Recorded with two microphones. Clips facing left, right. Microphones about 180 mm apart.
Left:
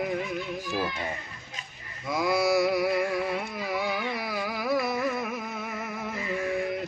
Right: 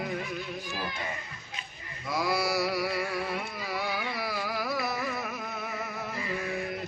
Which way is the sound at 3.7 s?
20° left (ahead or behind).